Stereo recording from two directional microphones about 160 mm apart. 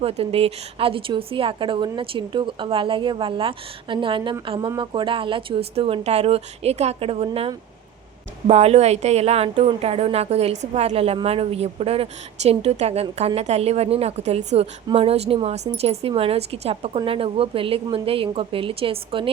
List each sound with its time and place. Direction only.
0.0 s a woman's voice: 35° right (ahead or behind)